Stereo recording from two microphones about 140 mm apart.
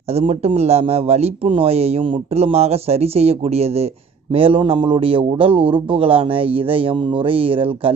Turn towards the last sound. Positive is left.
turn(degrees=-40)  # may be behind; listen again after turning